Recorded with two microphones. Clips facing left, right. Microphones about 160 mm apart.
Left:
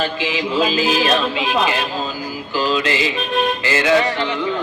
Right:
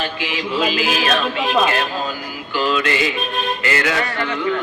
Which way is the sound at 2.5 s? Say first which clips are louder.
Even; 35° left (ahead or behind).